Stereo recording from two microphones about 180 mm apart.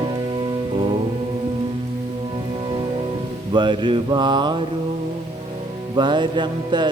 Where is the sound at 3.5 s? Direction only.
25° right (ahead or behind).